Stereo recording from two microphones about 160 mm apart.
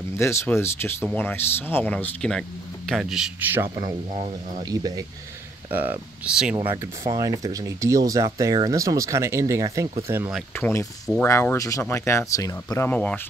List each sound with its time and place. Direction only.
0.2 s a man's voice: 15° left (ahead or behind); by 3.7 s 15° right (ahead or behind)
4.1 s speech: 50° right (ahead or behind)
4.6 s speech: 25° right (ahead or behind)
5.7 s a man's voice: 10° right (ahead or behind)
6.5 s a man's voice: 25° right (ahead or behind)
10.5 s speech: 15° left (ahead or behind)